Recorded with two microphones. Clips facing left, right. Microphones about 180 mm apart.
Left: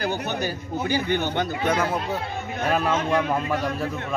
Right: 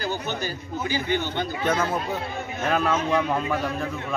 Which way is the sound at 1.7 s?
10° left (ahead or behind).